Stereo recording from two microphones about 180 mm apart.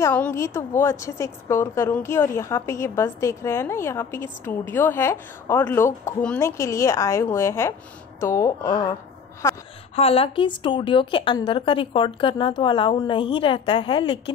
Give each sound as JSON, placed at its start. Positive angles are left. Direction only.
{"t": 0.0, "sound": "a woman's voice", "side_deg": 15}
{"t": 9.9, "sound": "a woman's voice", "side_deg": 35}